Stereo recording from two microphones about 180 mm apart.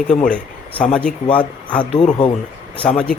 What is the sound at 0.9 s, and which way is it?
Speech, 5° left (ahead or behind).